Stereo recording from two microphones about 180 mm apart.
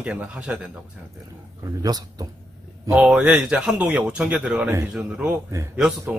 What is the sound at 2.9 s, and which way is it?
A man's voice, 5° right (ahead or behind).